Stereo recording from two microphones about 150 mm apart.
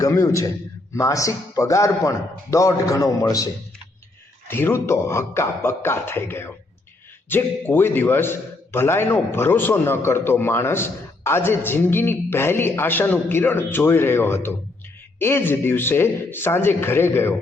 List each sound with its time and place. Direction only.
0.0 s a man's voice: 20° left (ahead or behind)